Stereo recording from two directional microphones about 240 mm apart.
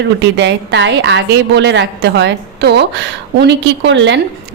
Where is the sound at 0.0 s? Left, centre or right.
Right.